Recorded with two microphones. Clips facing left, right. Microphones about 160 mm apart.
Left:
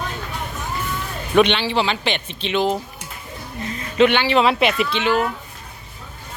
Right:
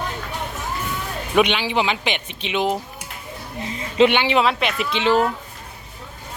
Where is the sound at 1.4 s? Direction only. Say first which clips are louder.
Left 2 dB; 10° right (ahead or behind).